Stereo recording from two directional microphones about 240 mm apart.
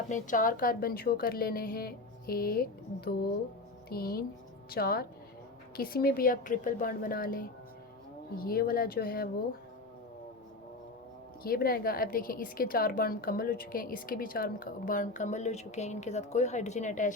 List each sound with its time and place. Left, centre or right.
0.1 s a woman's voice: left
11.4 s a woman's voice: left